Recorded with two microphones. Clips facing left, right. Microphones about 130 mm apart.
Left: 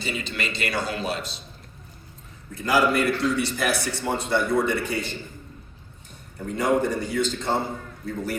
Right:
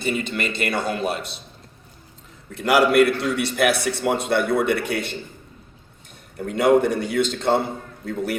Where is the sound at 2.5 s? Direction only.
70° right (ahead or behind).